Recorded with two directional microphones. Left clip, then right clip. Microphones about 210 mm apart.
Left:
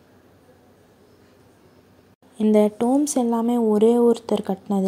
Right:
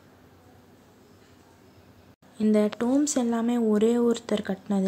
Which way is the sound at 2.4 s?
15° left (ahead or behind).